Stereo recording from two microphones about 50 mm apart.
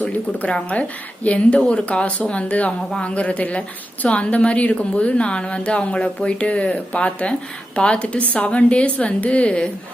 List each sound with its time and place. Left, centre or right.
0.0 s a woman's voice: left